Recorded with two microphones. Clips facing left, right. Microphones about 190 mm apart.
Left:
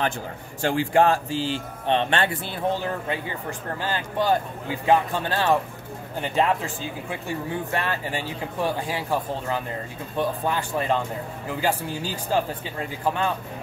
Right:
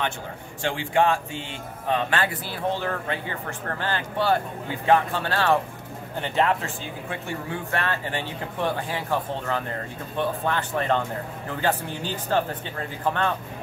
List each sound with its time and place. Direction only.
0.6 s a man's voice: 40° left (ahead or behind); by 13.3 s 10° left (ahead or behind)